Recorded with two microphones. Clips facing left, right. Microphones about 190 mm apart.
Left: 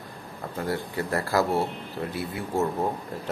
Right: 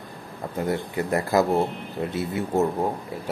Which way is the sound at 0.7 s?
20° right (ahead or behind).